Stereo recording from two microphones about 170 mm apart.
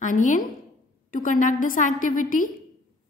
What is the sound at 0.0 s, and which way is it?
A woman's voice, 50° left (ahead or behind).